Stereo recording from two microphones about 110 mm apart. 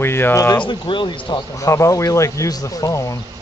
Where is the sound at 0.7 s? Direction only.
45° left (ahead or behind).